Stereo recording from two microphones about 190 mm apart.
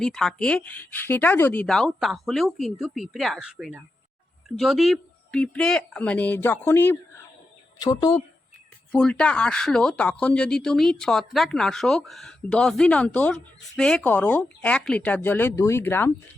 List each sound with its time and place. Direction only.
0.0 s speech: 5° left (ahead or behind)
7.8 s speech: 20° left (ahead or behind)
8.9 s speech: 5° left (ahead or behind)